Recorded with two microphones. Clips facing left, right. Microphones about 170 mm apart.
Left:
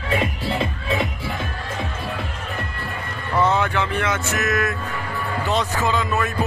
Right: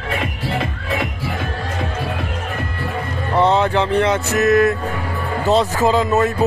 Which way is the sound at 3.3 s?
30° right (ahead or behind).